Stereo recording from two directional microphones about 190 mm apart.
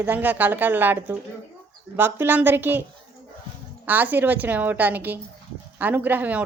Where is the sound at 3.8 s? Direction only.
10° right (ahead or behind).